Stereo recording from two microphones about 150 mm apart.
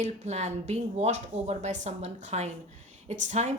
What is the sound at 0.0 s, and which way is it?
A woman's voice, 50° right (ahead or behind).